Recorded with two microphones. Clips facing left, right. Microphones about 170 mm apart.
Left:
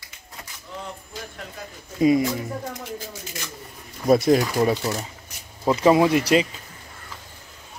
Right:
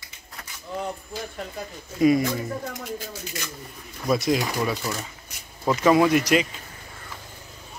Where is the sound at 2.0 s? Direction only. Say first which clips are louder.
Left 1 dB; 20° left (ahead or behind).